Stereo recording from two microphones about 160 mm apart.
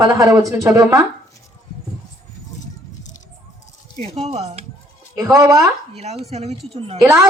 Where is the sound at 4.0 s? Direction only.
40° right (ahead or behind).